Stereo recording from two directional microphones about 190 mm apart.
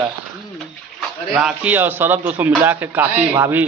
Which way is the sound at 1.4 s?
5° right (ahead or behind).